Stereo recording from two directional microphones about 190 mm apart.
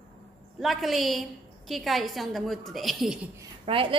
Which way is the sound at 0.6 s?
Centre (ahead or behind).